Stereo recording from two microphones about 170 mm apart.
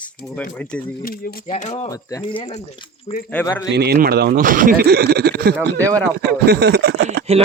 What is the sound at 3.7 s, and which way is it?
Speech, 70° right (ahead or behind).